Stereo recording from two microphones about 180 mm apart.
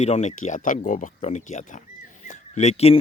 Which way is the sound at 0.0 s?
40° left (ahead or behind).